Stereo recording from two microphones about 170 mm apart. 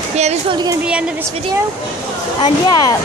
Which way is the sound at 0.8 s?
5° right (ahead or behind).